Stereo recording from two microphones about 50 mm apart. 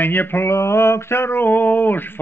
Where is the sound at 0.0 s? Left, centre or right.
Left.